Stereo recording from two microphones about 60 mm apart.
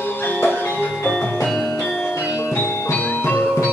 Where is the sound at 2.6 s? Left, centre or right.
Left.